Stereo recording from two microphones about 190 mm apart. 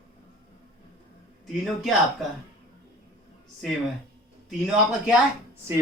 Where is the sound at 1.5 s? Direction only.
Centre (ahead or behind).